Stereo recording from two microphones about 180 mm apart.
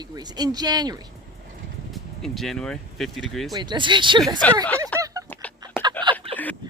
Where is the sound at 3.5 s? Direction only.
25° right (ahead or behind).